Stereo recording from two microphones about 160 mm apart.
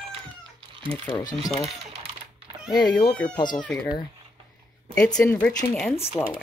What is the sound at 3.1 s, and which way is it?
Speech, 5° left (ahead or behind).